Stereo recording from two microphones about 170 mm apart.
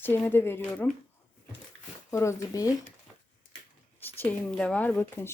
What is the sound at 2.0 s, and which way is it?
Speech, 20° left (ahead or behind).